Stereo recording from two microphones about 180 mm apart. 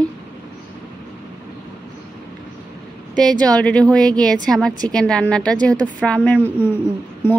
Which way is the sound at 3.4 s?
5° left (ahead or behind).